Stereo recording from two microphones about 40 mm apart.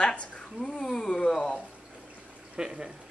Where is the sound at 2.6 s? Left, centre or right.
Centre.